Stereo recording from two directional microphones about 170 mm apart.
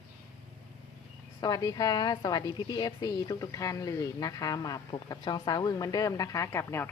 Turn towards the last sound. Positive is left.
turn(degrees=15)  # may be behind; listen again after turning